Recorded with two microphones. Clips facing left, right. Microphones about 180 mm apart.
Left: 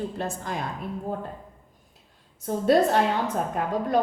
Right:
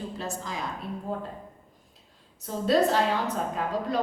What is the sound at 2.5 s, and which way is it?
Speech, 55° left (ahead or behind).